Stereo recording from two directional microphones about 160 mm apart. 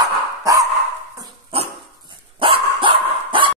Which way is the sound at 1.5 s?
35° right (ahead or behind).